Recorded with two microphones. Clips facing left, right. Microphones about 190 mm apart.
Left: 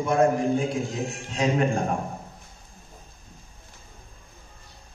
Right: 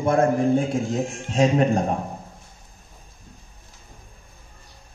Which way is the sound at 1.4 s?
40° right (ahead or behind).